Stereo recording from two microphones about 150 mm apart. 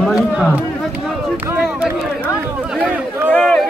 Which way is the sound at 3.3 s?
5° left (ahead or behind).